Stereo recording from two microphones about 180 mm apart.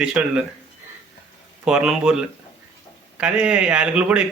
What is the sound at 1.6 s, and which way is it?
Speech, 5° right (ahead or behind).